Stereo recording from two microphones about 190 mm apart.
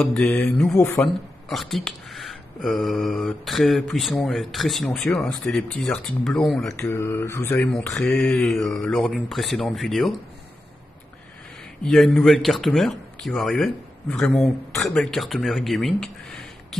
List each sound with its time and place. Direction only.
0.0 s speech: centre (ahead or behind)
0.7 s speech: 15° left (ahead or behind)
1.0 s speech: centre (ahead or behind)
6.8 s speech: 15° left (ahead or behind)
11.8 s speech: centre (ahead or behind)